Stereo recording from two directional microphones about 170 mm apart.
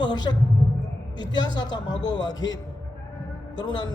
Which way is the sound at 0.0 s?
25° left (ahead or behind).